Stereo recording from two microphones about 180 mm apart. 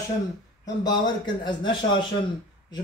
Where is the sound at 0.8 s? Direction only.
25° left (ahead or behind).